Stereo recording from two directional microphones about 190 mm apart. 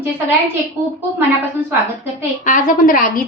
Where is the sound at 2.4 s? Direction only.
45° left (ahead or behind).